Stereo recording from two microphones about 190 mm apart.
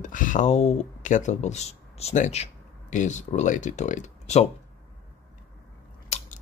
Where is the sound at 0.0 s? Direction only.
45° left (ahead or behind).